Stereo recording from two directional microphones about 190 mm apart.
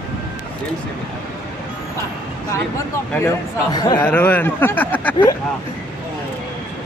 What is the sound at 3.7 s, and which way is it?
Speech, 20° left (ahead or behind).